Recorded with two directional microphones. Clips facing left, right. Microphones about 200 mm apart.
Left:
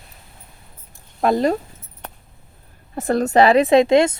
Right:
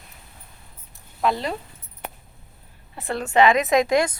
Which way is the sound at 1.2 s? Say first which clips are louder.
Left 7 dB; 45° left (ahead or behind).